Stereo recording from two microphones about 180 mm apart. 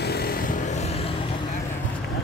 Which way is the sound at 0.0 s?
60° left (ahead or behind).